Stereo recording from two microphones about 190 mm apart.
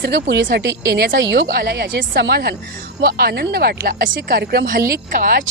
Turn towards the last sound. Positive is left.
turn(degrees=-50)  # may be behind; listen again after turning